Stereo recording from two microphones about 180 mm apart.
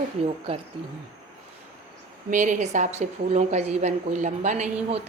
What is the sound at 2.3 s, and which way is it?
A woman's voice, 45° right (ahead or behind).